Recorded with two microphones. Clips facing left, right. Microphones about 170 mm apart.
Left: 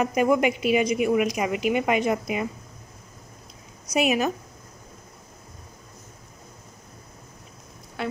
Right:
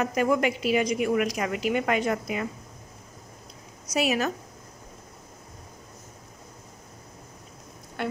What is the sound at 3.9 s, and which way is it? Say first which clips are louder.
Speech: left 3 dB; 15° left (ahead or behind).